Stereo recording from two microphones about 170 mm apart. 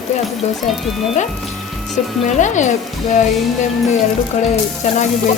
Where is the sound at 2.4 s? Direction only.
45° left (ahead or behind).